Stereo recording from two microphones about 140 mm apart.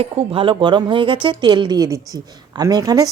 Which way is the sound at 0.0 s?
40° right (ahead or behind).